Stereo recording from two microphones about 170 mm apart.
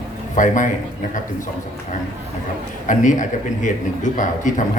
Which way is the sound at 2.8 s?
50° left (ahead or behind).